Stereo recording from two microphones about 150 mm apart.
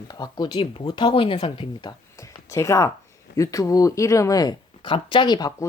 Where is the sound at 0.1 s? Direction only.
25° left (ahead or behind).